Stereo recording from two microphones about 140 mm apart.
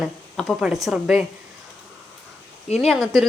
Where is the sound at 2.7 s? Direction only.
Centre (ahead or behind).